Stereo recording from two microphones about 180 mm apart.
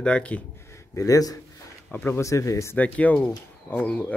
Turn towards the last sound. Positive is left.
turn(degrees=5)  # may be behind; listen again after turning